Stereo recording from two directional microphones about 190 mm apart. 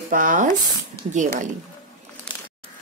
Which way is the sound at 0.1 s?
45° right (ahead or behind).